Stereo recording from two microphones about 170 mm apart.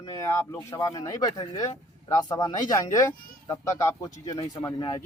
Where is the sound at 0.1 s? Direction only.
15° left (ahead or behind).